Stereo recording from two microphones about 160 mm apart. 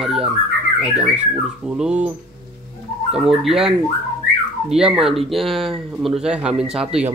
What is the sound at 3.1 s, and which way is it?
Speech, centre (ahead or behind).